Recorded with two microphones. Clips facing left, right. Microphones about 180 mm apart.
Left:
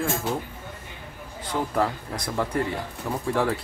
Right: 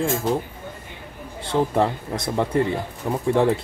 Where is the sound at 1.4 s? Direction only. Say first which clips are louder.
Right 5 dB; 25° right (ahead or behind).